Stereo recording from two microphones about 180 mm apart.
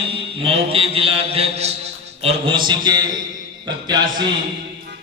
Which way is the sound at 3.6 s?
25° right (ahead or behind).